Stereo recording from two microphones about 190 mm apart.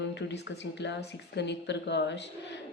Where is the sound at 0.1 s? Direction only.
65° left (ahead or behind).